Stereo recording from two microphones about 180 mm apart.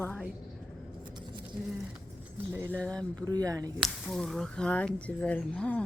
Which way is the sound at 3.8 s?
Centre (ahead or behind).